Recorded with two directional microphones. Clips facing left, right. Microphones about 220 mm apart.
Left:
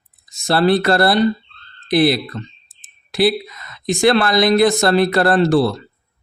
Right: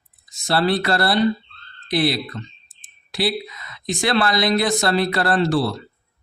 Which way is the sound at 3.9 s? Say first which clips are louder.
Left 6 dB; 50° left (ahead or behind).